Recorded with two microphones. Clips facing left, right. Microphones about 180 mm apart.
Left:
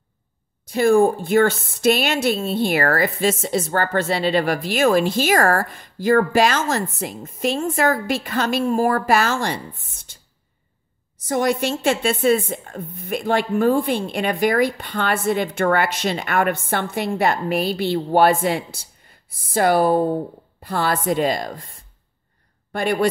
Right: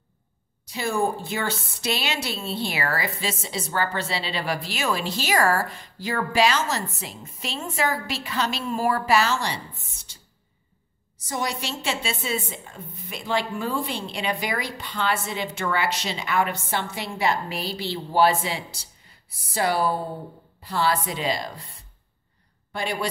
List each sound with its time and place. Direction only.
0.7 s a woman's voice: 50° left (ahead or behind)
11.2 s a woman's voice: 55° left (ahead or behind)